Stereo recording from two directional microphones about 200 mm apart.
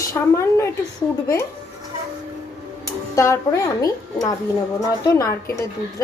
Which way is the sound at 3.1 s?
15° left (ahead or behind).